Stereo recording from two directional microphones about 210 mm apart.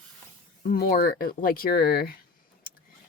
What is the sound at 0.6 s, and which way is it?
Speech, 40° left (ahead or behind).